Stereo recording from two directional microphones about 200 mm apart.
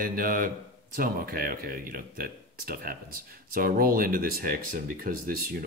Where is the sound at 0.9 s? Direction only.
45° right (ahead or behind).